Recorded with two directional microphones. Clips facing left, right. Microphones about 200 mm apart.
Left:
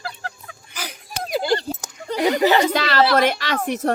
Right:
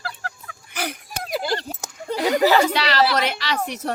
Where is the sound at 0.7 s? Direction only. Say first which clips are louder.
Right 6 dB; 60° right (ahead or behind).